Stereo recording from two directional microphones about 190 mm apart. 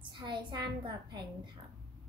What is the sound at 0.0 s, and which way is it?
A woman's voice, 25° right (ahead or behind).